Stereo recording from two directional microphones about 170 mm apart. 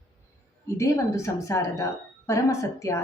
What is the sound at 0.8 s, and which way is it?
A woman's voice, 20° left (ahead or behind).